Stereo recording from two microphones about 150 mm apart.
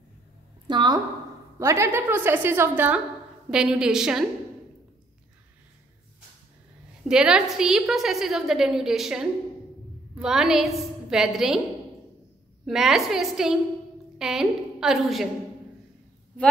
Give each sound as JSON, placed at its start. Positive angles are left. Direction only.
{"t": 0.7, "sound": "a woman's voice", "side_deg": -30}
{"t": 1.6, "sound": "a woman's voice", "side_deg": -20}
{"t": 7.1, "sound": "a woman's voice", "side_deg": -5}
{"t": 12.6, "sound": "a woman's voice", "side_deg": -5}